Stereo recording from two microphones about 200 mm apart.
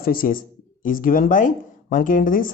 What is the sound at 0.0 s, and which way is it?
Speech, 45° left (ahead or behind).